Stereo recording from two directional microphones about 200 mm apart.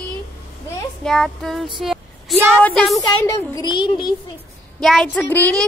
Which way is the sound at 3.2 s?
15° left (ahead or behind).